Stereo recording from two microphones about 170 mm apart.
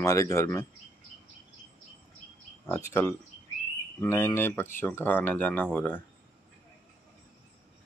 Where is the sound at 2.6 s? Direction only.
15° left (ahead or behind).